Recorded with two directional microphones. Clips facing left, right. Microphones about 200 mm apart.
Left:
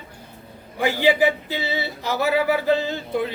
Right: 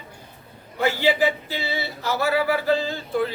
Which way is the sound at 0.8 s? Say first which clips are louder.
Left 2 dB; 15° left (ahead or behind).